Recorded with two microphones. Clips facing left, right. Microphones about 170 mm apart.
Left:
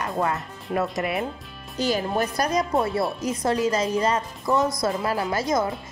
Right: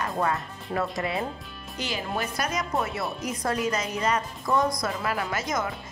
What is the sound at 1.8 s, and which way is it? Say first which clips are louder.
Speech: left 7 dB; 40° left (ahead or behind).